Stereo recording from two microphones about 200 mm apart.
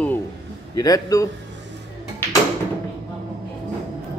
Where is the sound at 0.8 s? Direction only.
15° left (ahead or behind).